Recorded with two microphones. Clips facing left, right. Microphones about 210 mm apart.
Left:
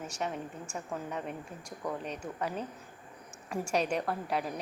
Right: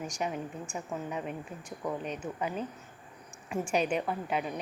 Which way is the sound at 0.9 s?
5° right (ahead or behind).